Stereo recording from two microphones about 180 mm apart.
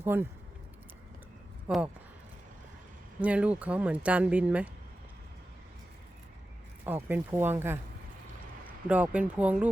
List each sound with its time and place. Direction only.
0.0 s speech: 10° right (ahead or behind)
1.6 s speech: 5° right (ahead or behind)
3.2 s speech: 5° right (ahead or behind)
6.8 s speech: 10° right (ahead or behind)
8.9 s speech: 10° right (ahead or behind)